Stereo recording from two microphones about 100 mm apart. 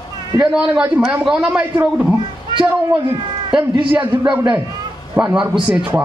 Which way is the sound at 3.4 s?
55° right (ahead or behind).